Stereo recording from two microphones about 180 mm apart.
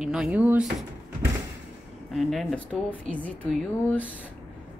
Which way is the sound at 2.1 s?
Centre (ahead or behind).